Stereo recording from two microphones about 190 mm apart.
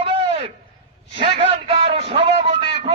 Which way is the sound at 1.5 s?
30° right (ahead or behind).